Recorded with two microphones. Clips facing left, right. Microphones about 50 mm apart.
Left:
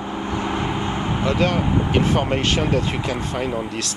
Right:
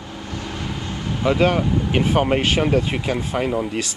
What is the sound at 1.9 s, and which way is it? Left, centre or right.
Speech, centre.